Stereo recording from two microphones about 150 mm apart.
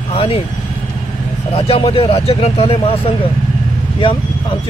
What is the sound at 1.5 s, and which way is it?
Speech, 40° left (ahead or behind).